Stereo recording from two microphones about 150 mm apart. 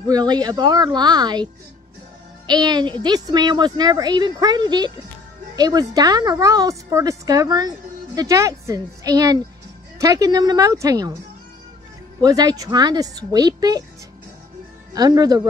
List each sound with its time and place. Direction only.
0.1 s a woman's voice: 25° right (ahead or behind)
2.4 s a woman's voice: 30° right (ahead or behind)
12.2 s a woman's voice: 25° right (ahead or behind)
15.0 s a woman's voice: 25° right (ahead or behind)